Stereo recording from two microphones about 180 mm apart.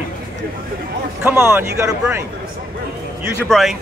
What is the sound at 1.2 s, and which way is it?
Speech, 10° right (ahead or behind).